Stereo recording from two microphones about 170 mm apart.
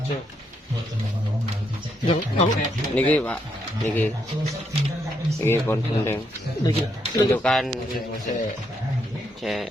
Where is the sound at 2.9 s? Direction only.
10° left (ahead or behind).